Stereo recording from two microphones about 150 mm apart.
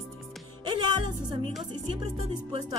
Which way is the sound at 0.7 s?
30° right (ahead or behind).